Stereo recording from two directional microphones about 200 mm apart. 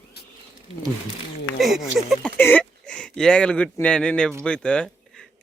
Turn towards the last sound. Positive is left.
turn(degrees=5)  # may be behind; listen again after turning